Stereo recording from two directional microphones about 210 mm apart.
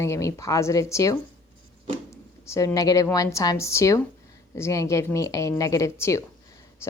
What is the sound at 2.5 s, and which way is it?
A woman's voice, 15° left (ahead or behind).